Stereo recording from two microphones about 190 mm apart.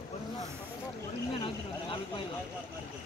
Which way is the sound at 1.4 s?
25° left (ahead or behind).